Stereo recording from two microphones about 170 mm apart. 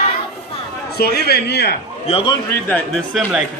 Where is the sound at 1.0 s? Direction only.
70° left (ahead or behind).